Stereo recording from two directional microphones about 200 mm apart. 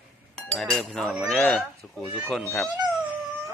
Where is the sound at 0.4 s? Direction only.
5° left (ahead or behind).